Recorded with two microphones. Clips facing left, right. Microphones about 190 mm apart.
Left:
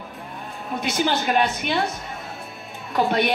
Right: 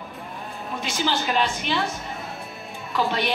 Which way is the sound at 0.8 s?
55° left (ahead or behind).